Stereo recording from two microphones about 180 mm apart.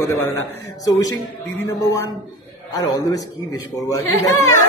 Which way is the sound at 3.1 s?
20° left (ahead or behind).